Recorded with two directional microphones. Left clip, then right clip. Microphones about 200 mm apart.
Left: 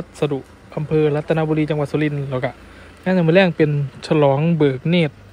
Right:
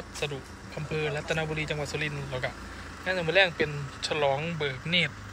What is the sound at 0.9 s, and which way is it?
Speech, 30° left (ahead or behind).